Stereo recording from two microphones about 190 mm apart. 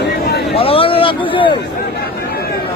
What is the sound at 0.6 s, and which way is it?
Speech, 30° left (ahead or behind).